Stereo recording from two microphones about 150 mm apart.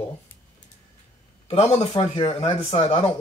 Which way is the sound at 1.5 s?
45° left (ahead or behind).